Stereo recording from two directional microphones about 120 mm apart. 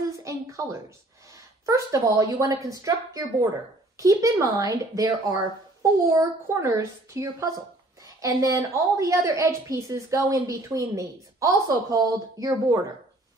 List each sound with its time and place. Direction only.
0.2 s a woman's voice: 25° right (ahead or behind)
3.9 s a woman's voice: 25° right (ahead or behind)